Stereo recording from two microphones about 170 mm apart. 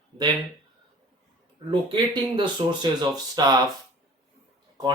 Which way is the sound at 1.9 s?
25° right (ahead or behind).